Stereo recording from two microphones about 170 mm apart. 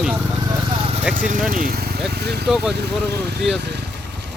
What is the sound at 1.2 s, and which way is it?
Speech, 55° right (ahead or behind).